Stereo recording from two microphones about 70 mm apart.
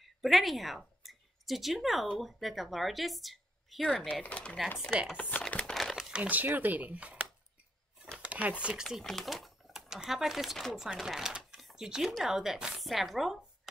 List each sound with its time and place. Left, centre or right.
0.0 s a woman's voice: centre
4.1 s speech: centre
5.5 s crumpling: centre
5.8 s crumpling: centre
6.2 s speech: right
8.2 s a sound: right
9.0 s speech: centre
11.6 s a sound: centre
12.1 s a woman's voice: centre